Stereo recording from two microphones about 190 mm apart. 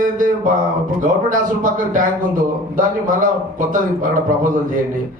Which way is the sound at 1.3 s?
45° right (ahead or behind).